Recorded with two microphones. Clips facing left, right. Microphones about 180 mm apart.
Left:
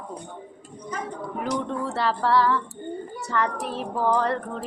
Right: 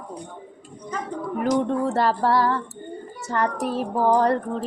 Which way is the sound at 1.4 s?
50° right (ahead or behind).